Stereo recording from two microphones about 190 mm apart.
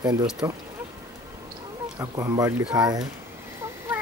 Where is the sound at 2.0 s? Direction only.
15° right (ahead or behind).